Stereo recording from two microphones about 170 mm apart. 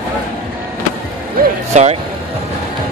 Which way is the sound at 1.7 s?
40° right (ahead or behind).